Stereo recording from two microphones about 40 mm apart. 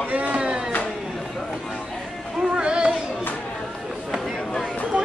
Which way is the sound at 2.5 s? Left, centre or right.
Right.